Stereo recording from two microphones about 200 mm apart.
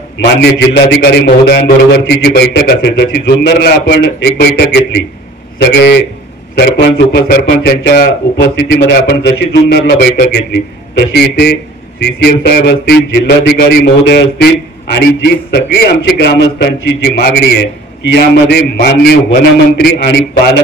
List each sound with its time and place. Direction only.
0.2 s a man's voice: 60° left (ahead or behind)